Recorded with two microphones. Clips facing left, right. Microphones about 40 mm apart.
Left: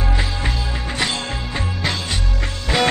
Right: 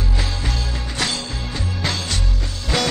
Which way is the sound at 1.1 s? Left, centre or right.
Left.